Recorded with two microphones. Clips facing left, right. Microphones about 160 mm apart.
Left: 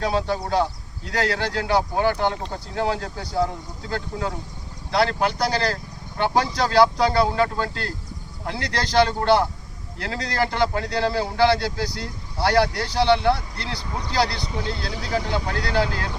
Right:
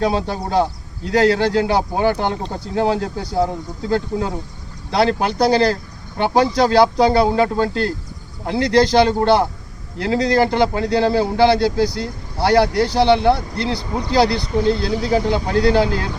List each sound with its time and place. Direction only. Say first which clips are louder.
0.0 s a man's voice: right 4 dB; 25° right (ahead or behind)